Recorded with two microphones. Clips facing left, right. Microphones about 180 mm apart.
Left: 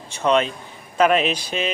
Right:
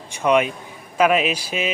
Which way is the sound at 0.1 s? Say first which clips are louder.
Right 1 dB; 10° right (ahead or behind).